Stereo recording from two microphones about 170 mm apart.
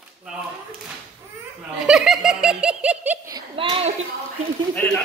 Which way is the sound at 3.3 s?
30° right (ahead or behind).